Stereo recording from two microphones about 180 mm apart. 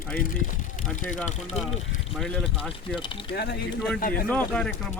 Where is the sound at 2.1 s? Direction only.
Centre (ahead or behind).